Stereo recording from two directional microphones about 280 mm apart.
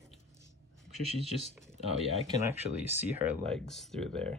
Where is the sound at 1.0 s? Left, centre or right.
Right.